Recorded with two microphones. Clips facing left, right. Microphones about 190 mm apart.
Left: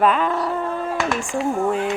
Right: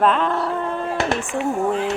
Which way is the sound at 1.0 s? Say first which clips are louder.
Right 2 dB; 35° right (ahead or behind).